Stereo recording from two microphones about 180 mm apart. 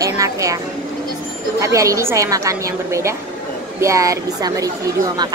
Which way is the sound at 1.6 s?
20° right (ahead or behind).